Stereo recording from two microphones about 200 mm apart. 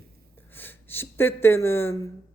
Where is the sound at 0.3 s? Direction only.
10° left (ahead or behind).